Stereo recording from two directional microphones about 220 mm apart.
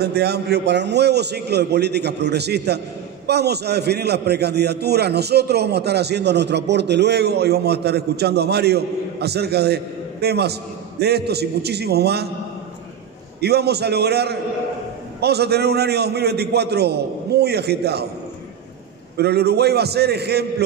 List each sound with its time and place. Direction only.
0.0 s a man's voice: 50° right (ahead or behind)
13.4 s a man's voice: 45° right (ahead or behind)
19.1 s a man's voice: 50° right (ahead or behind)